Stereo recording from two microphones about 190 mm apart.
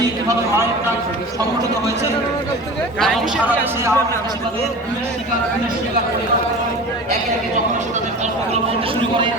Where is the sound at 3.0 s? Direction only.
5° right (ahead or behind).